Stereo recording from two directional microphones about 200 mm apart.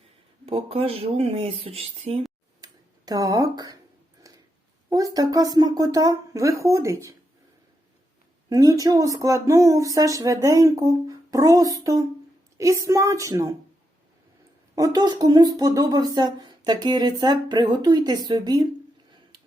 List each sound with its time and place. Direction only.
0.4 s speech: 30° right (ahead or behind)
3.1 s speech: 15° right (ahead or behind)
4.2 s a sound: 15° right (ahead or behind)
4.9 s speech: 20° right (ahead or behind)
8.4 s speech: 20° right (ahead or behind)
14.8 s speech: 20° right (ahead or behind)